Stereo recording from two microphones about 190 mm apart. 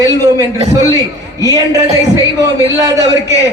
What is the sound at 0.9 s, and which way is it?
A man's voice, 20° right (ahead or behind).